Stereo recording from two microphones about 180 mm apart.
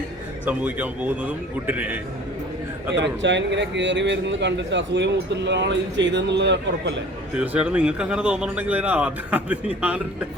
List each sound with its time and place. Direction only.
0.4 s speech: 10° right (ahead or behind)
2.9 s speech: 85° right
7.3 s speech: 5° right (ahead or behind)